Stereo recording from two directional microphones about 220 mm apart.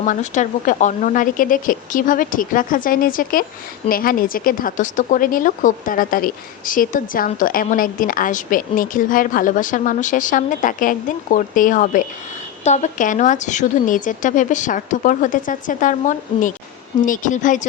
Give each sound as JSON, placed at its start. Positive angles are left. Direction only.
{"t": 0.0, "sound": "speech", "side_deg": 35}